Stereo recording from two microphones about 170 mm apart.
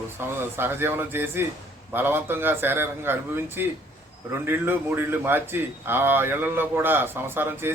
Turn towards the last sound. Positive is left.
turn(degrees=-15)  # may be behind; listen again after turning